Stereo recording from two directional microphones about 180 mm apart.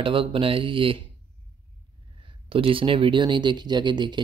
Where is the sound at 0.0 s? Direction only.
30° right (ahead or behind).